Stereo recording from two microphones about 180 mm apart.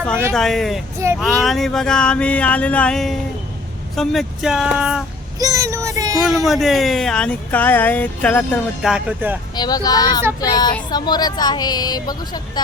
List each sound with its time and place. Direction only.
0.3 s speech: centre (ahead or behind)
5.4 s speech: 20° right (ahead or behind)
6.2 s speech: centre (ahead or behind)
8.8 s speech: 5° right (ahead or behind)
9.6 s speech: 20° left (ahead or behind)